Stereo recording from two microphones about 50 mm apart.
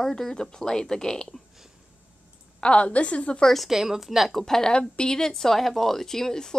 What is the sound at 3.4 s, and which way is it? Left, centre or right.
Speech, centre.